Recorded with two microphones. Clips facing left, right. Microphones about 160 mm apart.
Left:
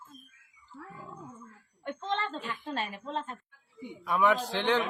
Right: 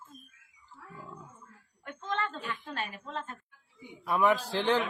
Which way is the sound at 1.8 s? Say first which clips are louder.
Left 2 dB; 25° left (ahead or behind).